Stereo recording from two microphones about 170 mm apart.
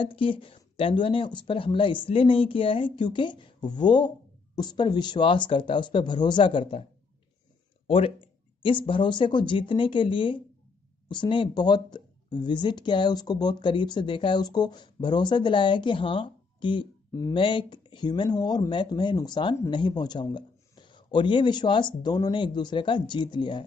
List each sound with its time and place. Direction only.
0.0 s speech: 30° left (ahead or behind)
7.8 s speech: 35° left (ahead or behind)